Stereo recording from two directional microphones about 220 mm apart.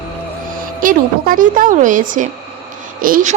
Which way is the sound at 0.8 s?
35° right (ahead or behind).